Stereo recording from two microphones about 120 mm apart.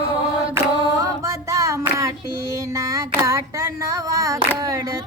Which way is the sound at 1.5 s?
25° right (ahead or behind).